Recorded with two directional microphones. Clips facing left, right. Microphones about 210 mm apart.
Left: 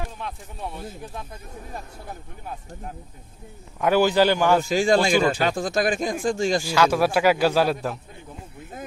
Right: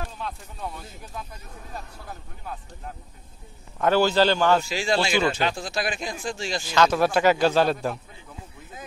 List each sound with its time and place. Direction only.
3.8 s a man's voice: 15° left (ahead or behind)
4.6 s speech: 45° left (ahead or behind)
6.6 s a man's voice: 10° left (ahead or behind)